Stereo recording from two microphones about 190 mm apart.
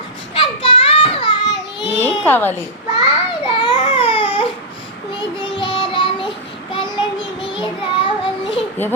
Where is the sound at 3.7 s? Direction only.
30° left (ahead or behind).